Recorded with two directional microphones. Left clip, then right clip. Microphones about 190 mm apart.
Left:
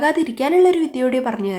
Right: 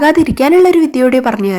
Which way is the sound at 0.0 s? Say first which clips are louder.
Right 8 dB; 35° right (ahead or behind).